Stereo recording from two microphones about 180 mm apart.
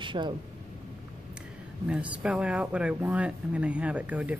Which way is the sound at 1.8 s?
5° right (ahead or behind).